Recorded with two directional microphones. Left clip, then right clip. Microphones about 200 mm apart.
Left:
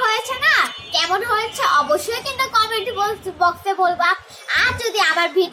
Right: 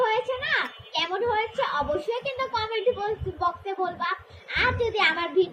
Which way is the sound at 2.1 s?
15° left (ahead or behind).